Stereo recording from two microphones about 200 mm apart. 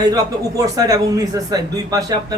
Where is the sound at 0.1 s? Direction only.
15° right (ahead or behind).